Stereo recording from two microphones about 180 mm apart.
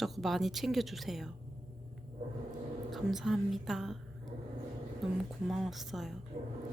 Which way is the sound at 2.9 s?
Centre (ahead or behind).